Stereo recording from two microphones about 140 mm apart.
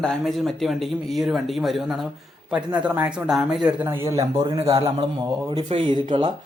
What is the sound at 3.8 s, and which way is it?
Speech, 20° right (ahead or behind).